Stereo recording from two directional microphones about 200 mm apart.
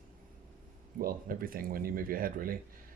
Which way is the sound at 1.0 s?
45° right (ahead or behind).